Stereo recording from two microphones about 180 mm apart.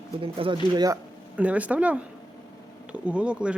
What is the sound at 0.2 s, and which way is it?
Speech, 30° right (ahead or behind).